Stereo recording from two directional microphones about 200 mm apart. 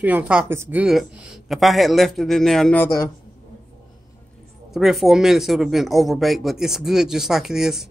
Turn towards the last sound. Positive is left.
turn(degrees=0)  # may be behind; listen again after turning